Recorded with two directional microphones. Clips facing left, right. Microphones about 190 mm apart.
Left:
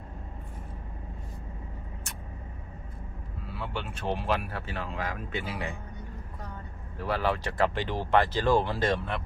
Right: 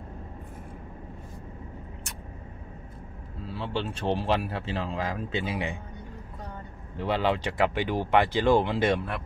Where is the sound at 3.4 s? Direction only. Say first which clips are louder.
Right 5 dB; 30° right (ahead or behind).